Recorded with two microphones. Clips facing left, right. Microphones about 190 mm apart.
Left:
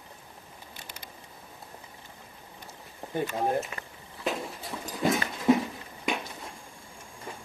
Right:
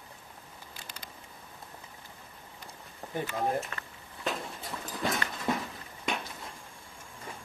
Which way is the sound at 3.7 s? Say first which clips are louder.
Left 2 dB; 10° left (ahead or behind).